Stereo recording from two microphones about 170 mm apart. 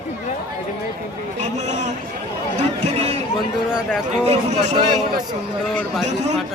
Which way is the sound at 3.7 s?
5° right (ahead or behind).